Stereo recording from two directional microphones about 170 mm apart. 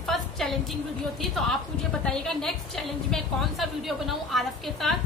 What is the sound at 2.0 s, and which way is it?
A woman's voice, 5° left (ahead or behind).